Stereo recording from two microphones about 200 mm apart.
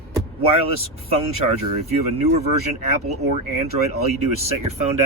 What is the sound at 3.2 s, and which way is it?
Speech, 35° right (ahead or behind).